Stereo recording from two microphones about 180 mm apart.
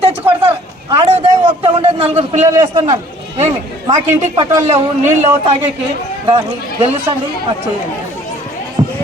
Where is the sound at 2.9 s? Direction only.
40° right (ahead or behind).